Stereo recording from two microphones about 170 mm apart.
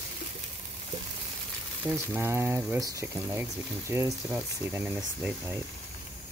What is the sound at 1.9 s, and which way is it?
Speech, 15° right (ahead or behind).